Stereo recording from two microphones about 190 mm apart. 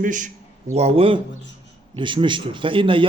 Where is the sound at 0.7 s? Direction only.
35° right (ahead or behind).